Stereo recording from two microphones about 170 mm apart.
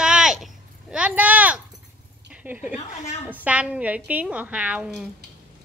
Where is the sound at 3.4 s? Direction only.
5° right (ahead or behind).